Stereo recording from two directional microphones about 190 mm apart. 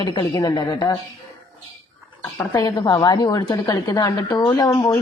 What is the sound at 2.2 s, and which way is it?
A woman's voice, 15° left (ahead or behind).